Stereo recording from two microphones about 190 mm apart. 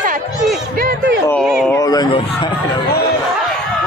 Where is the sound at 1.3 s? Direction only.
Centre (ahead or behind).